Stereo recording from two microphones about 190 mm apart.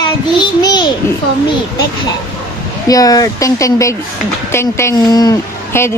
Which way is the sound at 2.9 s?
20° left (ahead or behind).